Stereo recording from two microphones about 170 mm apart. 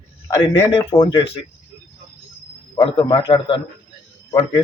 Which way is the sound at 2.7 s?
30° left (ahead or behind).